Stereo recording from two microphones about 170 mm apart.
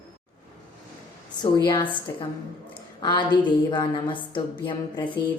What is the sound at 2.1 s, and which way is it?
A woman's voice, 20° left (ahead or behind).